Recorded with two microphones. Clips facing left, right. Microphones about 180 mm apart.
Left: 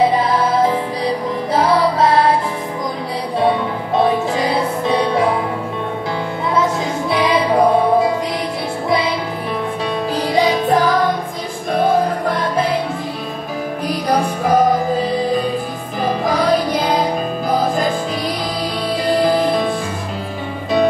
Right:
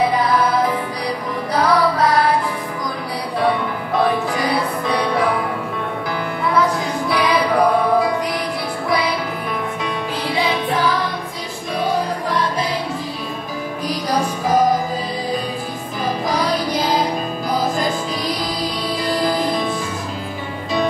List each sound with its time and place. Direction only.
0.0 s music: 25° left (ahead or behind)
3.3 s music: 25° left (ahead or behind)
6.5 s music: 25° left (ahead or behind)
10.2 s music: 40° left (ahead or behind)
14.0 s music: 55° left (ahead or behind)
19.0 s music: 55° left (ahead or behind)